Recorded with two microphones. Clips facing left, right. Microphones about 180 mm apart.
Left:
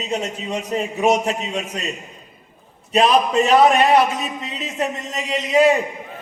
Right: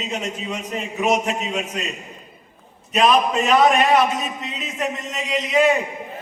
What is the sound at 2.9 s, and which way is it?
A man's voice, 35° left (ahead or behind).